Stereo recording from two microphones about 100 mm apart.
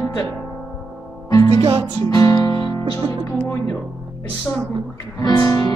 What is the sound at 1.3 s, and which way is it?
Music, 40° left (ahead or behind).